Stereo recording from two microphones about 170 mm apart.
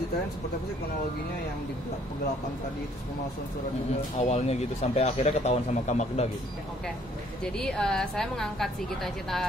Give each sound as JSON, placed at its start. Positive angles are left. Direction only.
{"t": 4.2, "sound": "speech", "side_deg": 40}
{"t": 7.5, "sound": "a woman's voice", "side_deg": 5}